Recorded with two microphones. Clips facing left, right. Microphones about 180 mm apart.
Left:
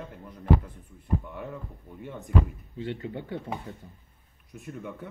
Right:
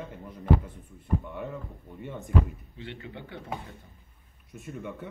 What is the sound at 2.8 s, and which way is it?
Speech, 40° left (ahead or behind).